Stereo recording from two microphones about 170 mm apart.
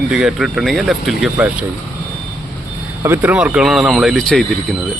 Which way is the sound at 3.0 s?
10° right (ahead or behind).